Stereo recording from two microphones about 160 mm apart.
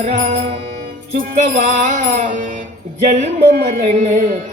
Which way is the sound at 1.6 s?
50° right (ahead or behind).